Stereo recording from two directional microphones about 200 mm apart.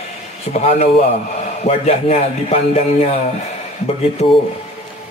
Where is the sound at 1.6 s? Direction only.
30° left (ahead or behind).